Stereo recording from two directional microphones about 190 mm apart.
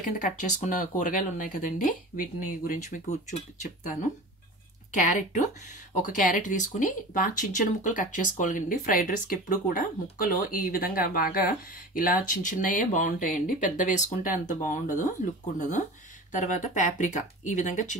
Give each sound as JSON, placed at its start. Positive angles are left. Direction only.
{"t": 0.2, "sound": "speech", "side_deg": 40}
{"t": 5.0, "sound": "speech", "side_deg": 40}
{"t": 16.3, "sound": "speech", "side_deg": 40}